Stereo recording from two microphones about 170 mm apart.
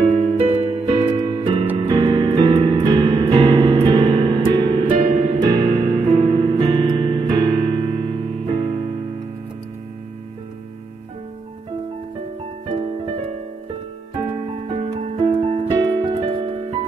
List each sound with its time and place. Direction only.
0.0 s music: 30° right (ahead or behind)
14.7 s music: 35° right (ahead or behind)